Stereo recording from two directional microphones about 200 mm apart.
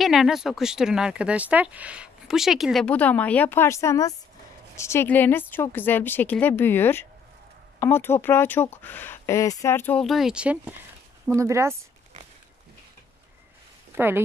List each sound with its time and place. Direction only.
0.0 s speech: centre (ahead or behind)
13.9 s speech: 10° right (ahead or behind)